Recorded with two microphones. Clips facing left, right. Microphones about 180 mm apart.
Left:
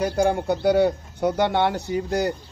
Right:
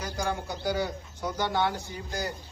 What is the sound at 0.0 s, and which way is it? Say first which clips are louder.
A man's voice: left 11 dB; 60° left (ahead or behind).